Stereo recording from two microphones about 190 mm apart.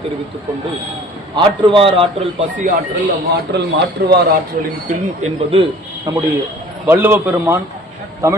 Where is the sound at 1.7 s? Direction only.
30° right (ahead or behind).